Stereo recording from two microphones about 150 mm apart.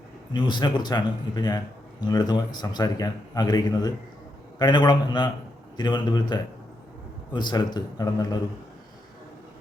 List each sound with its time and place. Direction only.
0.3 s a man's voice: 30° left (ahead or behind)